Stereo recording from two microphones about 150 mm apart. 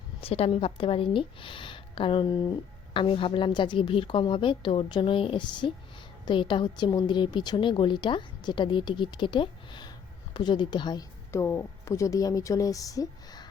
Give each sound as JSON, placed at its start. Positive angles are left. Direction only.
{"t": 0.2, "sound": "speech", "side_deg": 40}
{"t": 11.3, "sound": "speech", "side_deg": 20}